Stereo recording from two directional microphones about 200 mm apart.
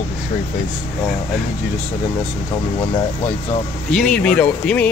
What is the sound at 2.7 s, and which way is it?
Speech, 20° left (ahead or behind).